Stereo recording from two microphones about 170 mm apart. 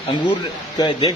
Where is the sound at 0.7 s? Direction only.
25° left (ahead or behind).